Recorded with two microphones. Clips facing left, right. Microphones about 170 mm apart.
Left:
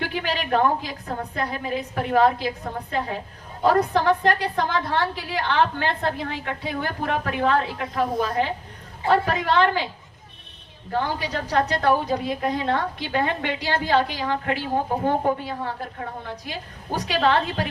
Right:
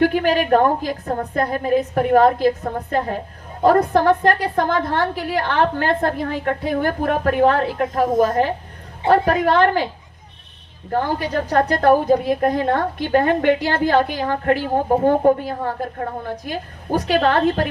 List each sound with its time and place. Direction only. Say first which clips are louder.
0.0 s a woman's voice: right 10 dB; 50° right (ahead or behind)
10.9 s a woman's voice: right 5 dB; 50° right (ahead or behind)